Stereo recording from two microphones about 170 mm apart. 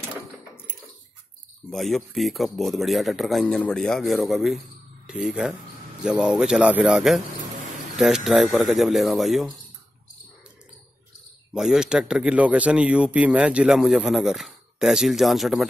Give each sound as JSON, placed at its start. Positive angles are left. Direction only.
{"t": 1.7, "sound": "a man's voice", "side_deg": 0}
{"t": 11.5, "sound": "a man's voice", "side_deg": -5}